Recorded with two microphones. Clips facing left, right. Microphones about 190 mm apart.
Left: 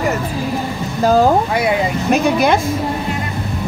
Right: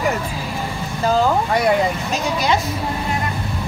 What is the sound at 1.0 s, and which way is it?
Speech, 45° left (ahead or behind).